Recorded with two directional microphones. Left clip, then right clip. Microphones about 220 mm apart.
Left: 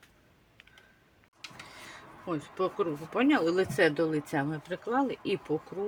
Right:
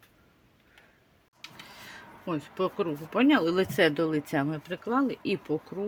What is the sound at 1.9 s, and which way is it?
Speech, 40° right (ahead or behind).